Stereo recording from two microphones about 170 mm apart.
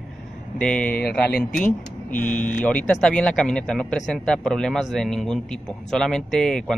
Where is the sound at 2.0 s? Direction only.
50° left (ahead or behind).